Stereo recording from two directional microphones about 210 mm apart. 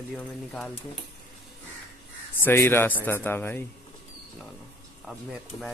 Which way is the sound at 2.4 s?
10° left (ahead or behind).